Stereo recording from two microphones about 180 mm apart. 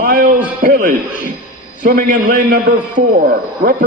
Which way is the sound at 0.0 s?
50° right (ahead or behind).